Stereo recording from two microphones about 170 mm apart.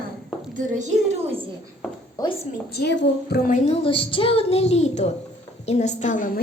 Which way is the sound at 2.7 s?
80° left.